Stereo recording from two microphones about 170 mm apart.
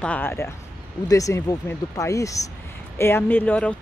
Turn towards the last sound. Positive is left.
turn(degrees=10)  # may be behind; listen again after turning